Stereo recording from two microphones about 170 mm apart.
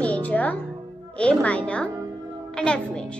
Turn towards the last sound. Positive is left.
turn(degrees=5)  # may be behind; listen again after turning